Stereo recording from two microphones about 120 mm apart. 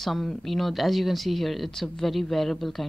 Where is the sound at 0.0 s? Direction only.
Centre (ahead or behind).